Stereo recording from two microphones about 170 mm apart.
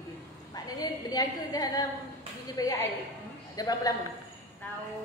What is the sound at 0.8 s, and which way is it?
A woman's voice, 20° left (ahead or behind).